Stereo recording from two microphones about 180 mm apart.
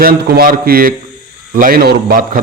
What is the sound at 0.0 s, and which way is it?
A man's voice, 55° right (ahead or behind).